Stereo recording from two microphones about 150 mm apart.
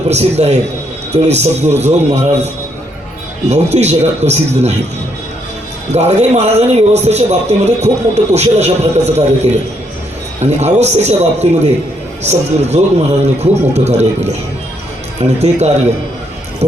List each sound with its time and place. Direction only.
0.1 s a man's voice: 45° right (ahead or behind)
3.5 s a man's voice: 50° right (ahead or behind)
5.9 s a man's voice: 45° right (ahead or behind)
15.4 s a man's voice: 45° right (ahead or behind)